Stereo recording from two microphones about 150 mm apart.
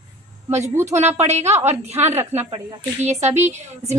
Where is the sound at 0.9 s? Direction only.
50° right (ahead or behind).